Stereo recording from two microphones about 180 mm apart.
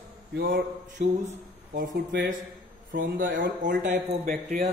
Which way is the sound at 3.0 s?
50° right (ahead or behind).